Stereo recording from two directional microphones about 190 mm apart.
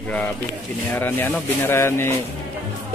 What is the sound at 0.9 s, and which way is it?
Speech, 10° left (ahead or behind).